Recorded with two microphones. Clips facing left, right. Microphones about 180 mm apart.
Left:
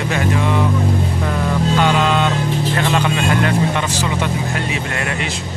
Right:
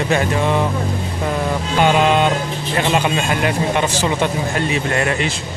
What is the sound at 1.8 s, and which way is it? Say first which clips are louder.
Speech: right 5 dB; 20° right (ahead or behind).